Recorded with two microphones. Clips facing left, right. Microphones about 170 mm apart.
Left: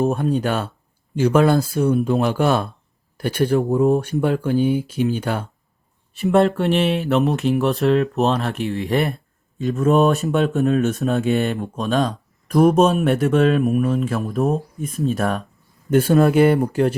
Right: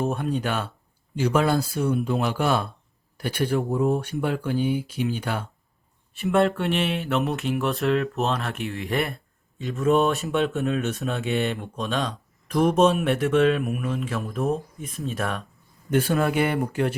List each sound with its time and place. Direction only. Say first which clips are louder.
0.0 s speech: left 6 dB; 40° left (ahead or behind)
9.6 s speech: left 4 dB; 45° left (ahead or behind)